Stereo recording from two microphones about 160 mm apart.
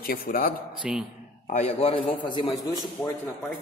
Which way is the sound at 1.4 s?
45° left (ahead or behind).